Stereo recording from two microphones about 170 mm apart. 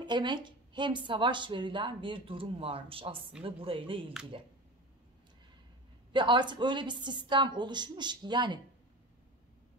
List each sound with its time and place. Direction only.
0.0 s a woman's voice: 25° right (ahead or behind)
6.1 s a woman's voice: 30° right (ahead or behind)